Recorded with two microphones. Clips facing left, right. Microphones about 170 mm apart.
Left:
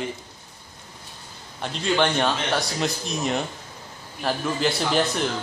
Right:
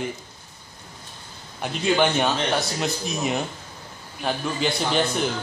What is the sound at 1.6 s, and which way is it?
Speech, 5° right (ahead or behind).